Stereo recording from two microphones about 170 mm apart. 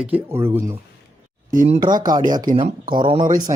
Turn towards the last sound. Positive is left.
turn(degrees=-30)  # may be behind; listen again after turning